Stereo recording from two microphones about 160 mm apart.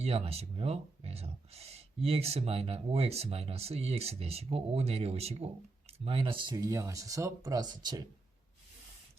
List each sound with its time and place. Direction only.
0.0 s speech: 40° right (ahead or behind)